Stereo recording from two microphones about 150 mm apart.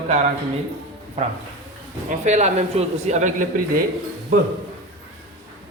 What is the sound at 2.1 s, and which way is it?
Speech, 50° right (ahead or behind).